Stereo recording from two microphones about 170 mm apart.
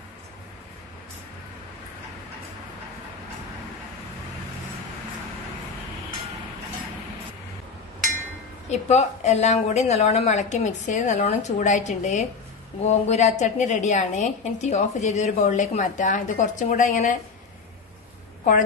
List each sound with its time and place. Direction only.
8.6 s a woman's voice: 40° left (ahead or behind)